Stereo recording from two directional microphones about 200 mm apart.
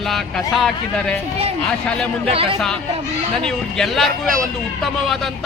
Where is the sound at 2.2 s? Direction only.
30° right (ahead or behind).